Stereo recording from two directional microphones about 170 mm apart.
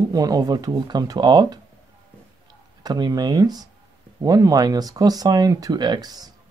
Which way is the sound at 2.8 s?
25° right (ahead or behind).